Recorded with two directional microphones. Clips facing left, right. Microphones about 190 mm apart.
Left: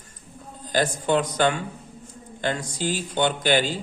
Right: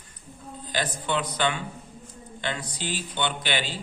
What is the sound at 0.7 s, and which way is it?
A man's voice, 45° left (ahead or behind).